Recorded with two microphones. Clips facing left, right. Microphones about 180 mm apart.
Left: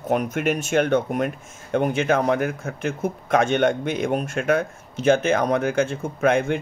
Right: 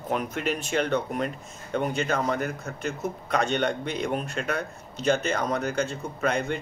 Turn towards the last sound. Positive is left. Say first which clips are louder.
# left 7 dB
turn(degrees=55)  # may be behind; listen again after turning